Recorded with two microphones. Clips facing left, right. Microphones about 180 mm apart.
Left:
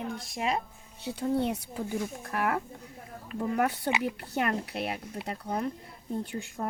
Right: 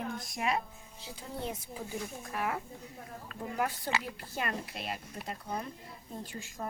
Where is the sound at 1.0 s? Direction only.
70° left (ahead or behind).